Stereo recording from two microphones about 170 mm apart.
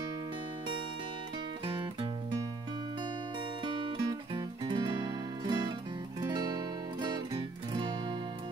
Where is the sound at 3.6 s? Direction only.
25° right (ahead or behind).